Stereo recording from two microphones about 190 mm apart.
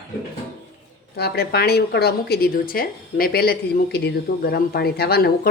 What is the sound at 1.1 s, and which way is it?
Speech, 55° left (ahead or behind).